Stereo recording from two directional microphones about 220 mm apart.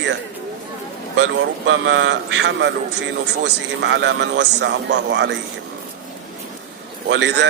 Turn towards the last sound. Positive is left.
turn(degrees=-55)  # may be behind; listen again after turning